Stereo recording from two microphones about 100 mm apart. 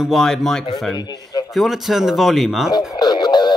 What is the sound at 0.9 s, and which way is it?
Speech, 40° left (ahead or behind).